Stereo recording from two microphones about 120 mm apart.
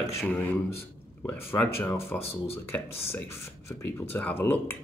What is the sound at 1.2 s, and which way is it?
Speech, 15° left (ahead or behind).